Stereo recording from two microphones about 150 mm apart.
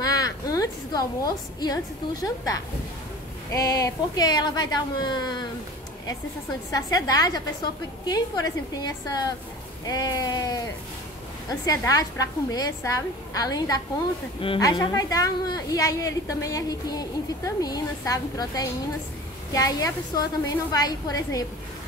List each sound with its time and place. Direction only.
0.0 s a sound: 25° left (ahead or behind)
2.2 s a woman's voice: 25° left (ahead or behind)
6.7 s a woman's voice: 25° left (ahead or behind)